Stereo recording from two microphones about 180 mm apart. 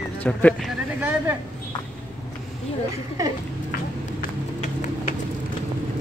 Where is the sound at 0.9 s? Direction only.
10° right (ahead or behind).